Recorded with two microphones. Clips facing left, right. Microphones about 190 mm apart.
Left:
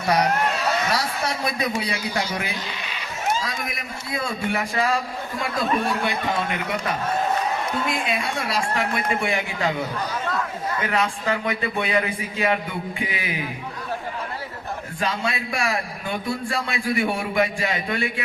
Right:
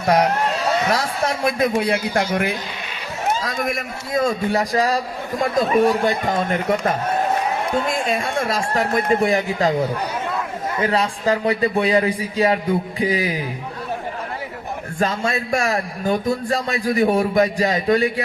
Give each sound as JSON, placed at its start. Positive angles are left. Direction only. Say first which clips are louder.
{"t": 0.0, "sound": "a man's voice", "louder": "right 3 dB", "side_deg": -50}
{"t": 10.8, "sound": "a man's voice", "louder": "right 5 dB", "side_deg": -35}
{"t": 14.9, "sound": "a man's voice", "louder": "right 5 dB", "side_deg": -45}